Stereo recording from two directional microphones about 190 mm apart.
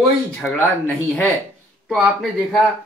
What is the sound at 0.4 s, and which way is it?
Speech, 10° left (ahead or behind).